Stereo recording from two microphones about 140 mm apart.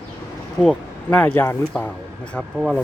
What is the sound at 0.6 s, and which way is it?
Speech, 5° left (ahead or behind).